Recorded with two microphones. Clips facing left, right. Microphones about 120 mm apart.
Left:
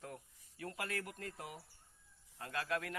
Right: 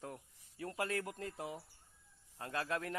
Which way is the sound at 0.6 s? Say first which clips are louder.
Right 4 dB; 25° right (ahead or behind).